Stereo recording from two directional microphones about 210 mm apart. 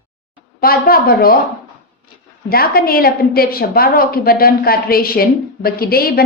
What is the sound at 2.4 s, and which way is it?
A woman's voice, 45° left (ahead or behind).